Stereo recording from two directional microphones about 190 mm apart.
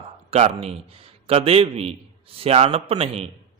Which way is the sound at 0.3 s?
35° right (ahead or behind).